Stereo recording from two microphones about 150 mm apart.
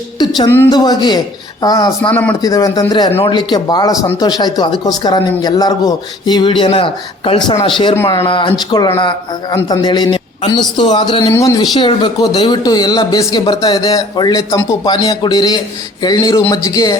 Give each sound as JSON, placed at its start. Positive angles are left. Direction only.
{"t": 0.2, "sound": "a sound", "side_deg": 25}
{"t": 0.7, "sound": "speech", "side_deg": 30}
{"t": 2.0, "sound": "speech", "side_deg": 10}
{"t": 2.4, "sound": "speech", "side_deg": 25}
{"t": 11.3, "sound": "speech", "side_deg": 25}